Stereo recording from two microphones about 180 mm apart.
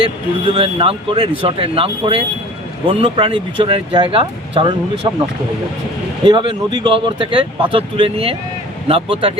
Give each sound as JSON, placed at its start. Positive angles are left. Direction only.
{"t": 0.4, "sound": "speech", "side_deg": -30}
{"t": 6.2, "sound": "speech", "side_deg": -25}